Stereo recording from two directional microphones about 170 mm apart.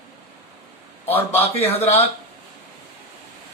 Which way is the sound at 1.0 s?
10° left (ahead or behind).